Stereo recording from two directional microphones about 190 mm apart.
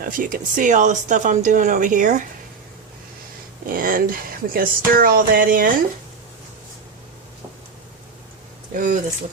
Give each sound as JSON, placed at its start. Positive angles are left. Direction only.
{"t": 0.0, "sound": "speech", "side_deg": -45}
{"t": 3.7, "sound": "speech", "side_deg": -45}
{"t": 8.7, "sound": "speech", "side_deg": -45}